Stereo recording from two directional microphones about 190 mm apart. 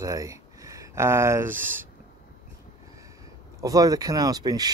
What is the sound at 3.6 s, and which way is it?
Speech, 20° right (ahead or behind).